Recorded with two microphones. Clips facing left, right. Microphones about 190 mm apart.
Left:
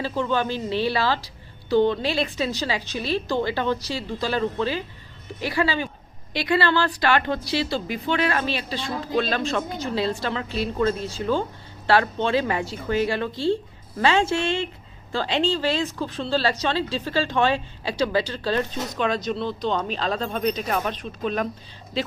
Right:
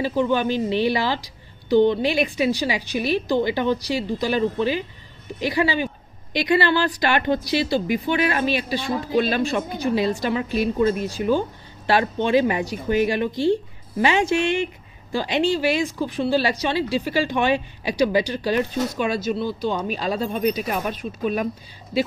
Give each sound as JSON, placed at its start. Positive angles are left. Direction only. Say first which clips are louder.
{"t": 0.0, "sound": "speech", "louder": "right 4 dB", "side_deg": -15}